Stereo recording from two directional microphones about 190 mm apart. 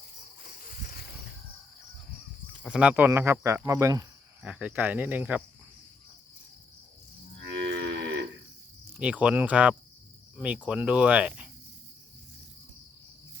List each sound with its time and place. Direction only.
0.4 s cricket: 50° left (ahead or behind)
2.6 s speech: 5° right (ahead or behind)
7.7 s moo: 75° right (ahead or behind)
9.0 s speech: 5° right (ahead or behind)